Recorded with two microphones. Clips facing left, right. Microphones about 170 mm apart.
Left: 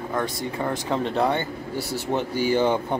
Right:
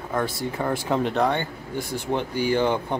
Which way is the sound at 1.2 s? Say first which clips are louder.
Left 2 dB; 10° left (ahead or behind).